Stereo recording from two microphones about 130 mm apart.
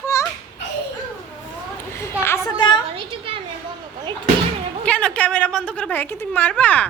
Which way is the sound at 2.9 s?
45° right (ahead or behind).